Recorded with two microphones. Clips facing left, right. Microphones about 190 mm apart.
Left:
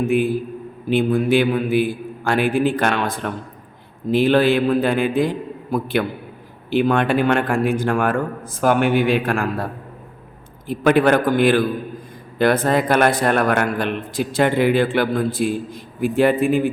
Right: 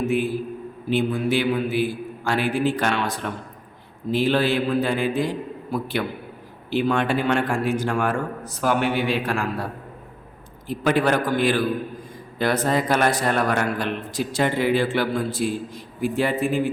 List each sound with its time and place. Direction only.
0.0 s a man's voice: 55° left (ahead or behind)
10.7 s a man's voice: 55° left (ahead or behind)